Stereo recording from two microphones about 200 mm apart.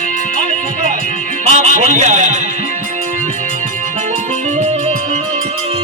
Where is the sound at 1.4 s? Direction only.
35° right (ahead or behind).